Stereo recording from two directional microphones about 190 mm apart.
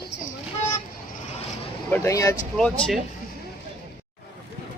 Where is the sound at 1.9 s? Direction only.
15° left (ahead or behind).